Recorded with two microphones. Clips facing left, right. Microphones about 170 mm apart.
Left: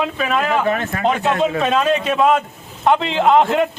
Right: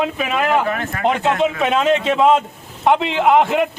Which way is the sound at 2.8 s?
15° right (ahead or behind).